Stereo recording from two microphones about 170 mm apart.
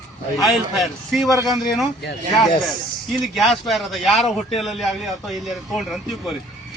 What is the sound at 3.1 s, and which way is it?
Speech, centre (ahead or behind).